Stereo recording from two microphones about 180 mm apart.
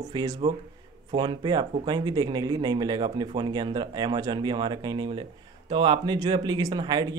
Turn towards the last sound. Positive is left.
turn(degrees=-25)  # may be behind; listen again after turning